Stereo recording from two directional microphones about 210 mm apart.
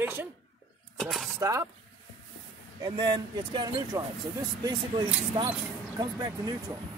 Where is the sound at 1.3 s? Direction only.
15° right (ahead or behind).